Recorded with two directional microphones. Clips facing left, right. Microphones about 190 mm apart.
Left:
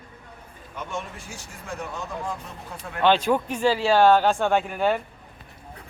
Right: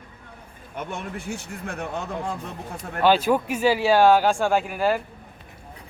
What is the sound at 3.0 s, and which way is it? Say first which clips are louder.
Speech: right 1 dB; 5° right (ahead or behind).